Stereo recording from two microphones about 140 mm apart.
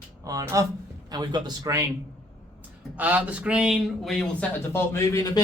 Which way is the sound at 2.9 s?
10° right (ahead or behind).